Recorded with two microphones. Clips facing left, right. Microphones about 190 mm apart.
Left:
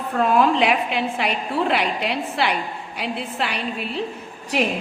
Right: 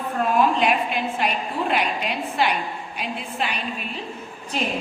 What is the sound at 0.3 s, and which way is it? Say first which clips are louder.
A woman's voice: left 1 dB; 70° left (ahead or behind).